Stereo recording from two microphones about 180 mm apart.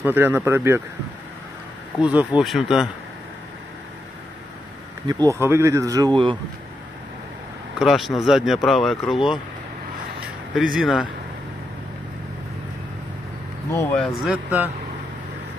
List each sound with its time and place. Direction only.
0.0 s speech: 10° right (ahead or behind)
2.0 s speech: 5° right (ahead or behind)
5.0 s speech: 20° right (ahead or behind)
7.8 s speech: centre (ahead or behind)
13.7 s speech: 10° left (ahead or behind); by 14.7 s 5° right (ahead or behind)